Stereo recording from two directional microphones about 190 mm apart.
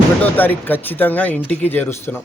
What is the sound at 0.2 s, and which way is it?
Speech, 10° left (ahead or behind).